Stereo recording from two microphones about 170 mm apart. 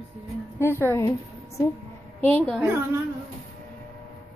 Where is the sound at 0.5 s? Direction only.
15° left (ahead or behind).